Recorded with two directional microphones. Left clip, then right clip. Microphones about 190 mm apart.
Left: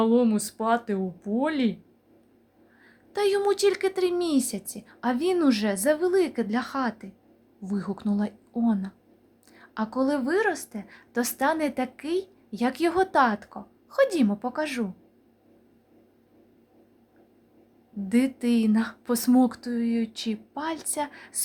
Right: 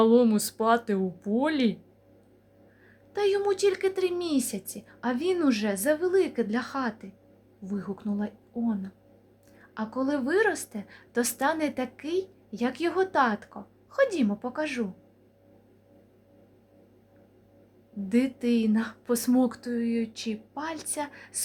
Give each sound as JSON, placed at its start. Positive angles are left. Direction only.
{"t": 0.0, "sound": "speech", "side_deg": -5}
{"t": 3.1, "sound": "a woman's voice", "side_deg": 20}
{"t": 7.6, "sound": "a woman's voice", "side_deg": 25}
{"t": 18.1, "sound": "a woman's voice", "side_deg": 15}